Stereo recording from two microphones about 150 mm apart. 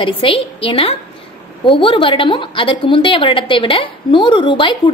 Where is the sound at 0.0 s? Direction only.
35° left (ahead or behind).